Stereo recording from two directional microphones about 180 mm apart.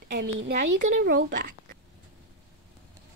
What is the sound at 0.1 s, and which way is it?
Speech, 65° right (ahead or behind).